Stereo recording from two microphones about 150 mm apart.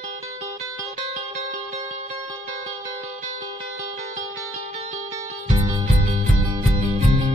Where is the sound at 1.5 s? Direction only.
50° right (ahead or behind).